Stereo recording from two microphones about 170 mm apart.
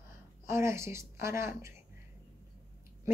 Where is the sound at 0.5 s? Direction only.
15° right (ahead or behind).